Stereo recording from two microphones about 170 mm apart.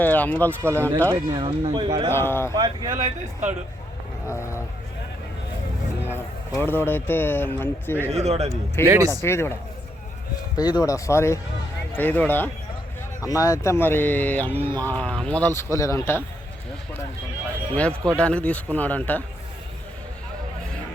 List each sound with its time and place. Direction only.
0.0 s speech: 10° left (ahead or behind)
0.6 s speech: 15° right (ahead or behind)
1.1 s speech: 30° right (ahead or behind)
2.0 s speech: 15° left (ahead or behind)
2.6 s speech: 25° right (ahead or behind)
4.3 s speech: 15° left (ahead or behind)
6.1 s speech: 10° left (ahead or behind)
8.1 s speech: 40° right (ahead or behind)
8.8 s speech: 15° right (ahead or behind)
9.2 s speech: 15° left (ahead or behind)
10.6 s speech: 25° left (ahead or behind)
17.7 s speech: 5° left (ahead or behind)